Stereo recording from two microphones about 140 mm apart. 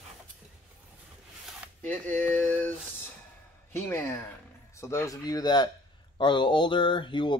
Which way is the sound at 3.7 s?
15° left (ahead or behind).